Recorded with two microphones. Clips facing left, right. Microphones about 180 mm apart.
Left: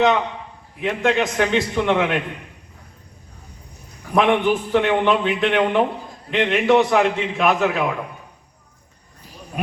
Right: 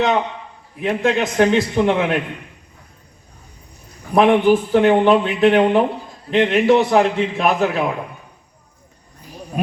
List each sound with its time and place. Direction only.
0.8 s a man's voice: 35° right (ahead or behind)
4.1 s a man's voice: 35° right (ahead or behind)